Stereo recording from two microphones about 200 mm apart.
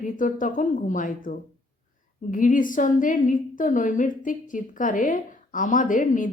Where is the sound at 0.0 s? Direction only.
40° left (ahead or behind).